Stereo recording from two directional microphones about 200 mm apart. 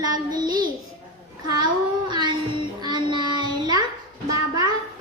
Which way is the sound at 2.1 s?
20° right (ahead or behind).